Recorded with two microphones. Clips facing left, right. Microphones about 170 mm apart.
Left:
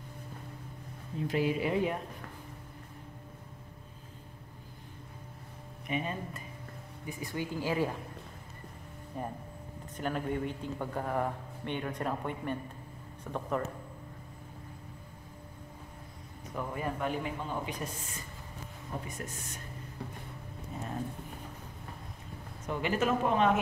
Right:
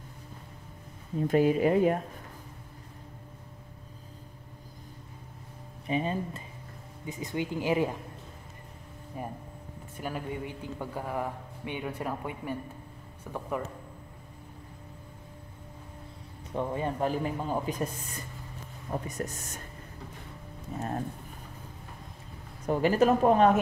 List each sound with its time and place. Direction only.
1.2 s speech: 45° right (ahead or behind)
5.9 s a man's voice: 30° right (ahead or behind)
9.1 s speech: 10° right (ahead or behind)
16.5 s a man's voice: 25° right (ahead or behind)
19.0 s a man's voice: 40° right (ahead or behind)
22.7 s a man's voice: 40° right (ahead or behind)